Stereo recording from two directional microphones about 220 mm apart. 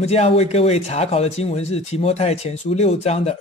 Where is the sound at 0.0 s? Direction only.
30° left (ahead or behind).